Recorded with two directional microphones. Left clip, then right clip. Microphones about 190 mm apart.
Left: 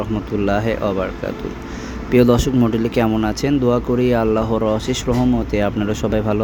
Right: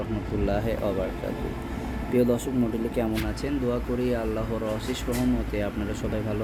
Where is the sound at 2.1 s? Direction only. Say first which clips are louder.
Left 10 dB; 50° left (ahead or behind).